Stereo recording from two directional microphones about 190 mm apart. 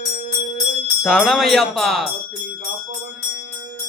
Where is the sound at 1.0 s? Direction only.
5° left (ahead or behind).